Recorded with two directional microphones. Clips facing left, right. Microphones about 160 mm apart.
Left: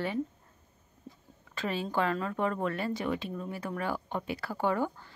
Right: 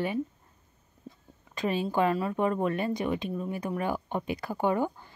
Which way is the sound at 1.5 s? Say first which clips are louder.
Right 4 dB; 15° right (ahead or behind).